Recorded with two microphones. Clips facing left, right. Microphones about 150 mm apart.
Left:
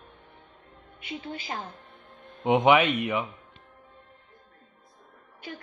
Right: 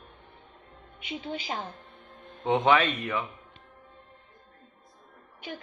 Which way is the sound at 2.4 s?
15° left (ahead or behind).